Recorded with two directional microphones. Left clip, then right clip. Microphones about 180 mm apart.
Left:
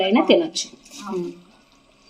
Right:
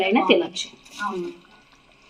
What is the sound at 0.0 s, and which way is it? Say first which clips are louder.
Speech: left 1 dB; 20° left (ahead or behind).